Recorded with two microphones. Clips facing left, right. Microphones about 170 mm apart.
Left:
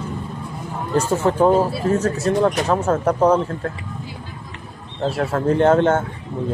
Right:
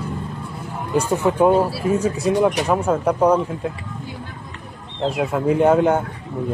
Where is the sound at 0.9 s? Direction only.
10° right (ahead or behind).